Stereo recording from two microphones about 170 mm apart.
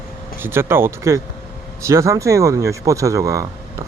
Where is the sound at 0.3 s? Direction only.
15° right (ahead or behind).